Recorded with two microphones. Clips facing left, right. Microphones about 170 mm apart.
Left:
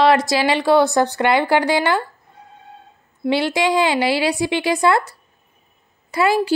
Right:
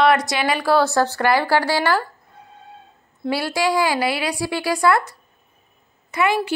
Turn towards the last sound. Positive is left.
turn(degrees=30)  # may be behind; listen again after turning